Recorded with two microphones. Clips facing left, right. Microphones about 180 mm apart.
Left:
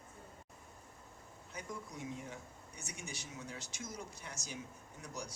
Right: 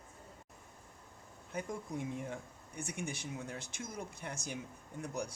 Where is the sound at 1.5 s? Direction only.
55° right (ahead or behind).